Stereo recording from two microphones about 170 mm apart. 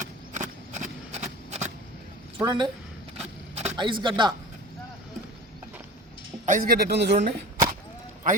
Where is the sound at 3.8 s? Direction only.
30° right (ahead or behind).